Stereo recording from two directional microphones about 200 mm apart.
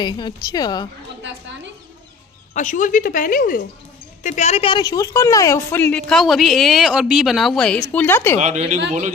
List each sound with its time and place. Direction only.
0.0 s a woman's voice: 20° left (ahead or behind)
1.2 s a woman's voice: 65° right (ahead or behind)
2.5 s a woman's voice: 40° left (ahead or behind); by 8.4 s 10° left (ahead or behind)
8.4 s speech: 35° right (ahead or behind)